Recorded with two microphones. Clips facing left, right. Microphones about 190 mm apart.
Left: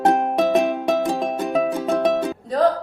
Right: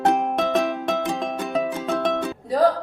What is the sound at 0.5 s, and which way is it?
Music, 15° left (ahead or behind).